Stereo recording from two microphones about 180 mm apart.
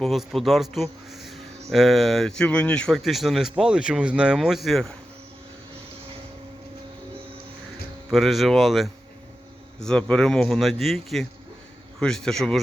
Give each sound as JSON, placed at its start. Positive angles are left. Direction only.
{"t": 0.0, "sound": "speech", "side_deg": 0}
{"t": 8.1, "sound": "speech", "side_deg": 0}